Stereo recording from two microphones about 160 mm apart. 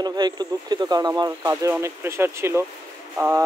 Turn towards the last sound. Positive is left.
turn(degrees=-10)  # may be behind; listen again after turning